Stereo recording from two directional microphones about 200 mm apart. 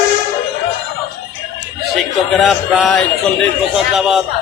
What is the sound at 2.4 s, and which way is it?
A man's voice, centre (ahead or behind).